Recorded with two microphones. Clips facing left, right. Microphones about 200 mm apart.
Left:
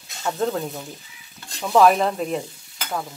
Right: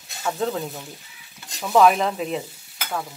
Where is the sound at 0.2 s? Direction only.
Centre (ahead or behind).